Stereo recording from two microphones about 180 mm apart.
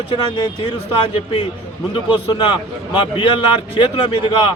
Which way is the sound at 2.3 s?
25° left (ahead or behind).